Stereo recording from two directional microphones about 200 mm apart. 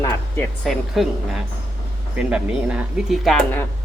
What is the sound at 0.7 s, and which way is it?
Speech, centre (ahead or behind).